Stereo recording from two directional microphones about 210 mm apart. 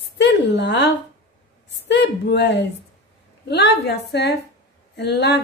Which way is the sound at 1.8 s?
55° left (ahead or behind).